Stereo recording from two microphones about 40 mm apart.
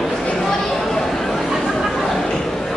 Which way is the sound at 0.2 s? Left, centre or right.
Centre.